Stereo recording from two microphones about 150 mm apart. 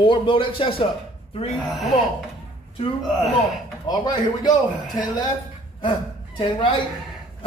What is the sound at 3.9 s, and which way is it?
Mantra, 25° left (ahead or behind).